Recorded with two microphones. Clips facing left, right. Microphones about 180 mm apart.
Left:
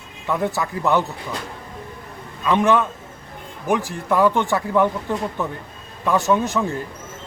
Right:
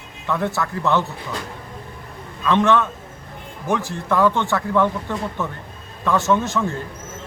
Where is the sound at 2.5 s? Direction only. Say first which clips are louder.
Even; 15° left (ahead or behind).